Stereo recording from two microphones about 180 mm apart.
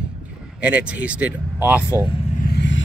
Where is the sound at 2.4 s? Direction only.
65° left (ahead or behind).